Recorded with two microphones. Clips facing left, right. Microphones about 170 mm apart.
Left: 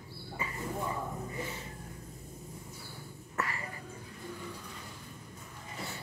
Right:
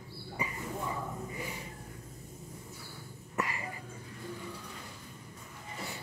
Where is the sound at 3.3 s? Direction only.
15° right (ahead or behind).